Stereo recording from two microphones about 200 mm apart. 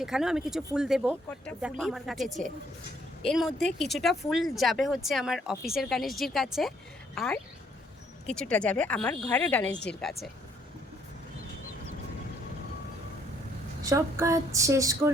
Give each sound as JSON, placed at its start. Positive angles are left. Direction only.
{"t": 0.0, "sound": "speech", "side_deg": -5}
{"t": 8.3, "sound": "speech", "side_deg": 5}
{"t": 13.8, "sound": "a woman's voice", "side_deg": -15}